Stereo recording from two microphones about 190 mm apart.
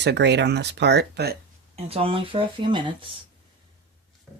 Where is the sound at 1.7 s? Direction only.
30° right (ahead or behind).